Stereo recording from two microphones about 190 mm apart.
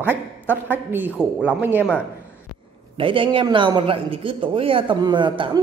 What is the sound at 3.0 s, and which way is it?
A man's voice, 25° right (ahead or behind).